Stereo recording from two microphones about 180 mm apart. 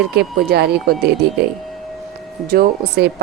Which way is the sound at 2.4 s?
55° right (ahead or behind).